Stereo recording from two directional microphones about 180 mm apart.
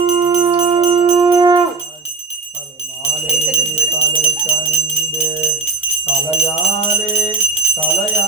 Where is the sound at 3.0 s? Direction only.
35° left (ahead or behind).